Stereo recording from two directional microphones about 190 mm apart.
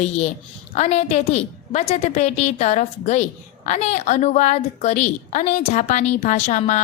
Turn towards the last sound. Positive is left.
turn(degrees=40)  # may be behind; listen again after turning